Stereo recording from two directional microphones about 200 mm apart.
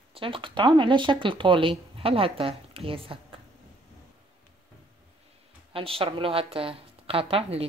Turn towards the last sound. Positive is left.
turn(degrees=-30)  # may be behind; listen again after turning